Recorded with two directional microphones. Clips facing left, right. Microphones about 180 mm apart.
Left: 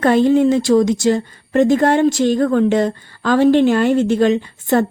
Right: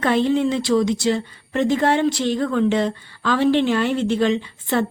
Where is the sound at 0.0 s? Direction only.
45° left (ahead or behind).